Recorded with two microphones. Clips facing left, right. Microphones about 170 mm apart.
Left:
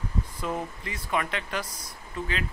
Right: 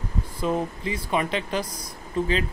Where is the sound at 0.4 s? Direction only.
25° right (ahead or behind).